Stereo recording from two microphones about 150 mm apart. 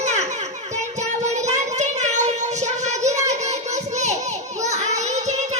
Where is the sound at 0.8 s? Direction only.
50° right (ahead or behind).